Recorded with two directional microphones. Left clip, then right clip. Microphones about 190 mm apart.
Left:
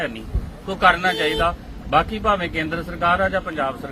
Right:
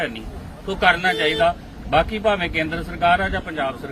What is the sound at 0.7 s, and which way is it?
A man's voice, centre (ahead or behind).